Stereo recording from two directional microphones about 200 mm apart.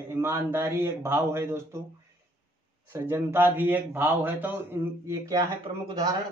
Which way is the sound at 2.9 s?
10° right (ahead or behind).